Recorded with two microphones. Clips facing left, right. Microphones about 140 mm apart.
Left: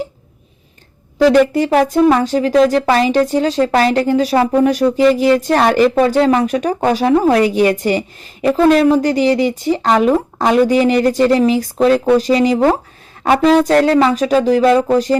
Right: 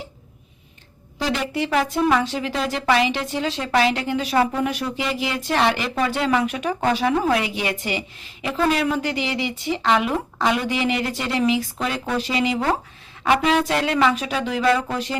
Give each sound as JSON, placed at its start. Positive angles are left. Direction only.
{"t": 1.3, "sound": "speech", "side_deg": 45}